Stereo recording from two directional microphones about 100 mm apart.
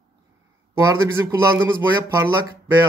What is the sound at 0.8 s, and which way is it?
Speech, 30° right (ahead or behind).